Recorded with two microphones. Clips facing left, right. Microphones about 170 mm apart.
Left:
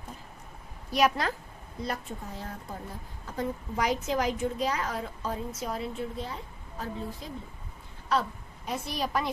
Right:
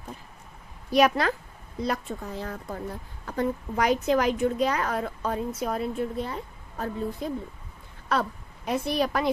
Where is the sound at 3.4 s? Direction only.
65° right (ahead or behind).